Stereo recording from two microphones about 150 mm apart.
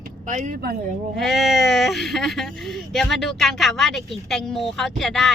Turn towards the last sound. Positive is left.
turn(degrees=0)  # may be behind; listen again after turning